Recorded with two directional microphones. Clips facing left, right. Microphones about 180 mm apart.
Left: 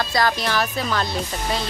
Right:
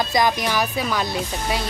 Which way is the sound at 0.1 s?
15° right (ahead or behind).